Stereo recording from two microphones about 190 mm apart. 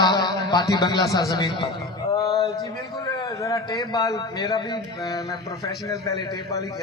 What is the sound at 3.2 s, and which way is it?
A man's voice, 15° left (ahead or behind).